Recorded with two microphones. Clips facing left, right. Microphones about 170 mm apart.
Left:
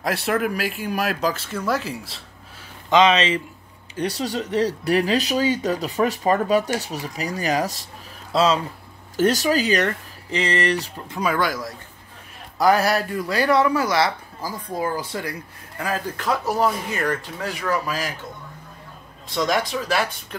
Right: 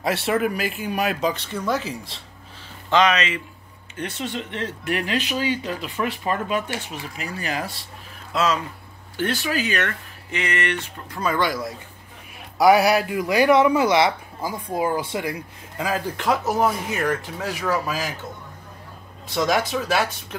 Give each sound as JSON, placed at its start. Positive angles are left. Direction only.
{"t": 0.0, "sound": "speech", "side_deg": 0}
{"t": 2.9, "sound": "speech", "side_deg": 25}
{"t": 11.1, "sound": "speech", "side_deg": 15}
{"t": 11.3, "sound": "speech", "side_deg": 0}
{"t": 12.6, "sound": "speech", "side_deg": -10}
{"t": 16.6, "sound": "speech", "side_deg": -5}
{"t": 19.3, "sound": "speech", "side_deg": -5}